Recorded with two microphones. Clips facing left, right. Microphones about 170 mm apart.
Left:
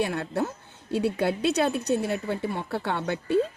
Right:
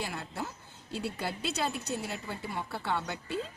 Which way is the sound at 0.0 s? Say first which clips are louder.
Left 10 dB; 60° left (ahead or behind).